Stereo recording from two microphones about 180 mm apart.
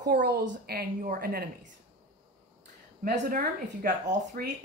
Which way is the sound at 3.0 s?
45° right (ahead or behind).